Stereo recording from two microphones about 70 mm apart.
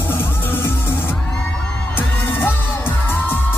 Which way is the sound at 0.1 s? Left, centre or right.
Left.